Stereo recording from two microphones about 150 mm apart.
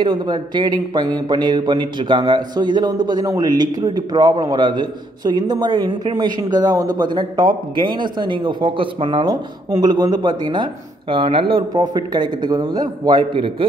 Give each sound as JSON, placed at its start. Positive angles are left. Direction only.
{"t": 0.0, "sound": "speech", "side_deg": -30}